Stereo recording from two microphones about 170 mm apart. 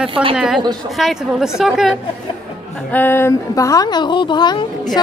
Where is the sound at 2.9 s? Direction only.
15° left (ahead or behind).